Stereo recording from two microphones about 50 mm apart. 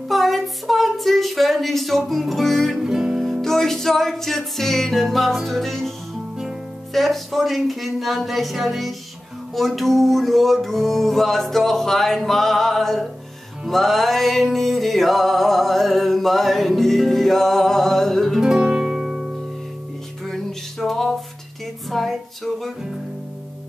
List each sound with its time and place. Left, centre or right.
0.1 s a sound: centre
2.8 s music: centre
3.3 s music: centre
18.4 s music: centre
20.2 s music: centre